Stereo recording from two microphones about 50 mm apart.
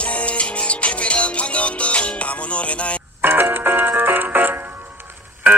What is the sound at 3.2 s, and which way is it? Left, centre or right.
Music, right.